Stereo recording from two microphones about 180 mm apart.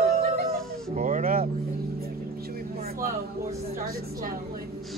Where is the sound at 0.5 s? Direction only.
45° right (ahead or behind).